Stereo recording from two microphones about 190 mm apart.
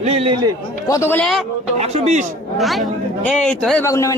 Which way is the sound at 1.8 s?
35° right (ahead or behind).